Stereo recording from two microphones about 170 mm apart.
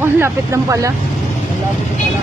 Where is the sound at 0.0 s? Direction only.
15° right (ahead or behind).